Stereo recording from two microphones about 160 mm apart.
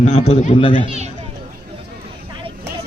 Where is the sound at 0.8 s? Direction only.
40° right (ahead or behind).